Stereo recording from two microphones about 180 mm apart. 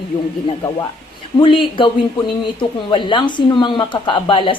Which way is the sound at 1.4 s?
30° left (ahead or behind).